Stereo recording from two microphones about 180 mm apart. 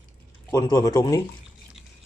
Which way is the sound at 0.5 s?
20° left (ahead or behind).